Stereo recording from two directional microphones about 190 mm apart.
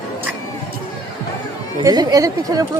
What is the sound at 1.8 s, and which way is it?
Speech, 20° right (ahead or behind).